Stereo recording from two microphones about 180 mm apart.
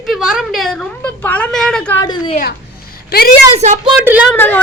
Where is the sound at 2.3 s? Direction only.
50° left (ahead or behind).